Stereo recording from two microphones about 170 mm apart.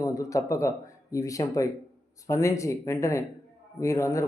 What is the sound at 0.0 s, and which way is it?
A man's voice, 20° left (ahead or behind).